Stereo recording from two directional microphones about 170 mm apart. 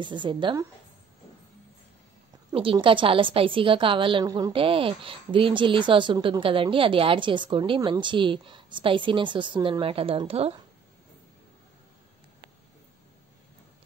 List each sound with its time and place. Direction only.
0.0 s a woman's voice: 30° right (ahead or behind)
2.5 s a woman's voice: 30° right (ahead or behind)